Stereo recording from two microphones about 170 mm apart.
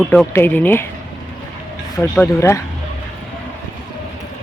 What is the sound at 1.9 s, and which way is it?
Speech, 15° left (ahead or behind).